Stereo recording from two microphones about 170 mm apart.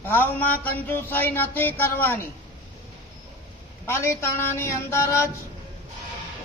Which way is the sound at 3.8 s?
15° left (ahead or behind).